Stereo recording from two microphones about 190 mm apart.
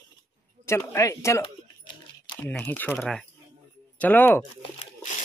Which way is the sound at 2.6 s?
10° left (ahead or behind).